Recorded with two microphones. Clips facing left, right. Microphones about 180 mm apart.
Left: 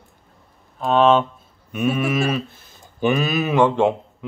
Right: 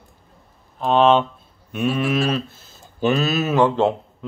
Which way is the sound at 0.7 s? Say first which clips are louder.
Even; centre (ahead or behind).